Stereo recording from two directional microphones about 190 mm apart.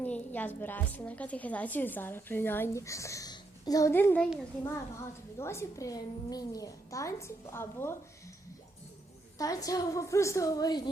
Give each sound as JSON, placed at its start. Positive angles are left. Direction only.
{"t": 0.0, "sound": "a woman's voice", "side_deg": 10}
{"t": 5.4, "sound": "a woman's voice", "side_deg": 15}
{"t": 9.4, "sound": "a woman's voice", "side_deg": 20}